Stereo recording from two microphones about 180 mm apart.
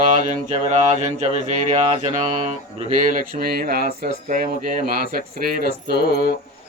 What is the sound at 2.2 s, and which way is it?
Speech, 40° right (ahead or behind).